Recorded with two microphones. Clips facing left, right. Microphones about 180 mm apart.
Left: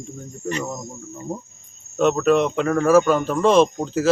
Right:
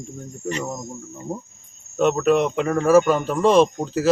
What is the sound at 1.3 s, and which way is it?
Speech, 15° right (ahead or behind).